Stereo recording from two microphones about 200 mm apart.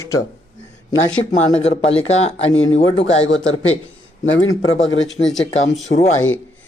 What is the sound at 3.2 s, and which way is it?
Speech, 75° left (ahead or behind).